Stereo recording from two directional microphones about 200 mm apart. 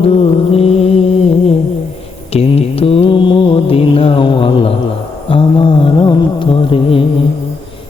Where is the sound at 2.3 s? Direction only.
30° left (ahead or behind).